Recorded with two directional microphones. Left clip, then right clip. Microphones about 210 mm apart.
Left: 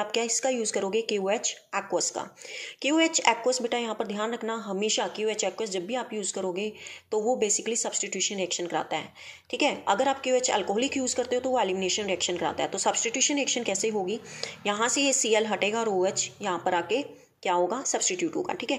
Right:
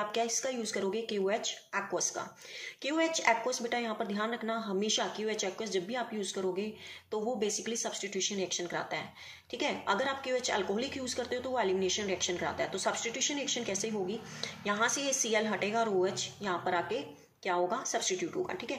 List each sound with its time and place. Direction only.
0.1 s speech: 40° left (ahead or behind)